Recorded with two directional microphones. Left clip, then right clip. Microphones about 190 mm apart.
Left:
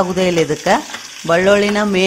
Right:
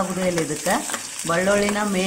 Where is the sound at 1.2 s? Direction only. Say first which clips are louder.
Left 8 dB; 40° left (ahead or behind).